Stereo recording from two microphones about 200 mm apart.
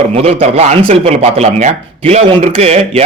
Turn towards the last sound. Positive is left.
turn(degrees=-30)  # may be behind; listen again after turning